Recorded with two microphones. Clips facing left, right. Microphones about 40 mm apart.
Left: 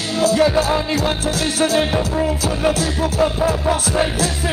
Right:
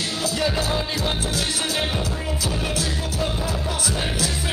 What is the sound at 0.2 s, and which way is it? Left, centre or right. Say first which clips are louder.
Speech: left 10 dB; left.